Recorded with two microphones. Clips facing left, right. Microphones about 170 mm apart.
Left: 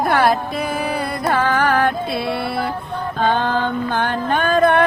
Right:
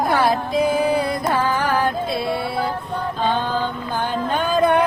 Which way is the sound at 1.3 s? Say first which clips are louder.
Left 5 dB; 85° left.